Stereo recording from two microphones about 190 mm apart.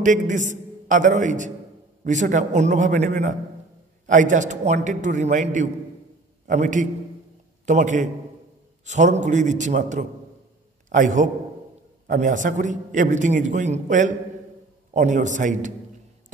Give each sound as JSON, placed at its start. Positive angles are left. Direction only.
{"t": 0.0, "sound": "a man's voice", "side_deg": -40}